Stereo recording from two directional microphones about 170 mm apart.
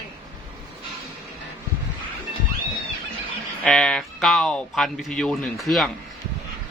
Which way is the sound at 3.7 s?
5° left (ahead or behind).